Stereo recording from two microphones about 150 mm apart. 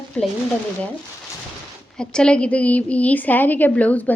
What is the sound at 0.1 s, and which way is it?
Speech, 10° left (ahead or behind).